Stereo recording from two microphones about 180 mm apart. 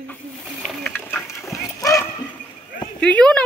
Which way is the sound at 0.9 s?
10° left (ahead or behind).